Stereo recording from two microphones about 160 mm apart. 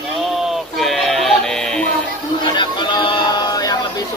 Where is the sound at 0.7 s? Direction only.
Centre (ahead or behind).